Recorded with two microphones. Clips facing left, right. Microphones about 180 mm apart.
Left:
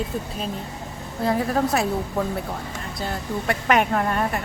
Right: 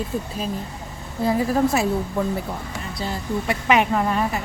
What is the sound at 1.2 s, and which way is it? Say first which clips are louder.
Speech: right 2 dB; centre (ahead or behind).